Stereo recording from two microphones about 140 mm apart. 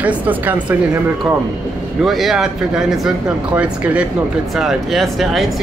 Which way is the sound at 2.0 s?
Centre (ahead or behind).